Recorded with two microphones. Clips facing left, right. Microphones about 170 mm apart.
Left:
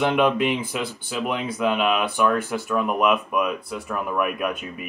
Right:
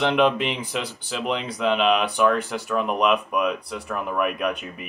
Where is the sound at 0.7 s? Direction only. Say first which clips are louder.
Left 1 dB; 5° left (ahead or behind).